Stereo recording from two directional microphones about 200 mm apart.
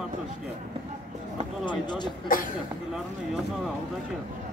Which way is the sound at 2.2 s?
40° left (ahead or behind).